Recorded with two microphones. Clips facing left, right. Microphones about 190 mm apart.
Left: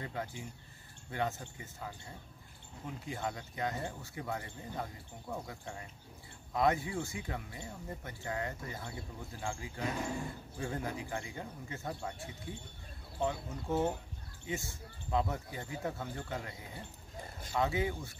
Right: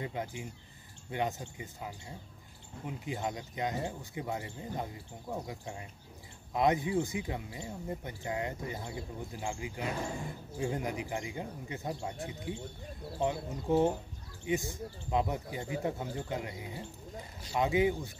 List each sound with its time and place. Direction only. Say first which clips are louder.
0.0 s speech: right 3 dB; 20° right (ahead or behind)